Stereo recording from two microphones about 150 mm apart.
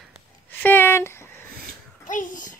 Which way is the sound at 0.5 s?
10° left (ahead or behind).